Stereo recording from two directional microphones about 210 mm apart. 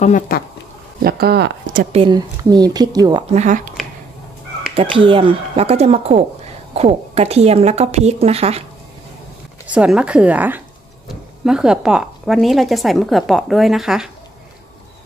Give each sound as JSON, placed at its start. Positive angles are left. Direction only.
{"t": 0.0, "sound": "speech", "side_deg": 35}
{"t": 1.0, "sound": "speech", "side_deg": -50}
{"t": 2.0, "sound": "speech", "side_deg": -20}
{"t": 3.3, "sound": "speech", "side_deg": -35}
{"t": 4.9, "sound": "speech", "side_deg": -25}
{"t": 9.7, "sound": "speech", "side_deg": -5}